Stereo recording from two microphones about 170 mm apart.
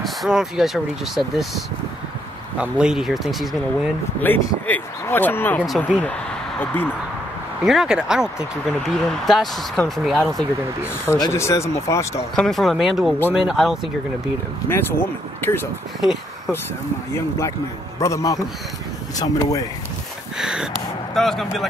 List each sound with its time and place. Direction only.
0.0 s speech: centre (ahead or behind)
2.6 s speech: 5° right (ahead or behind)
4.2 s speech: 10° left (ahead or behind)
6.6 s speech: 10° left (ahead or behind)
7.6 s speech: 5° right (ahead or behind)
11.1 s speech: 20° left (ahead or behind)
12.4 s speech: centre (ahead or behind)
14.7 s speech: 15° left (ahead or behind)
16.0 s speech: centre (ahead or behind)
17.9 s speech: 20° left (ahead or behind)
20.3 s speech: 5° right (ahead or behind)